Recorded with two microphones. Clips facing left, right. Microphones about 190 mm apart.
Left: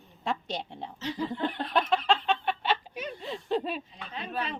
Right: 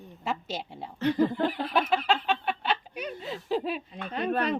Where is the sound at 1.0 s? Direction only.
55° right (ahead or behind).